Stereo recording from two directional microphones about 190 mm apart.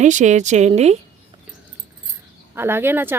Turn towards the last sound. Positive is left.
turn(degrees=-10)  # may be behind; listen again after turning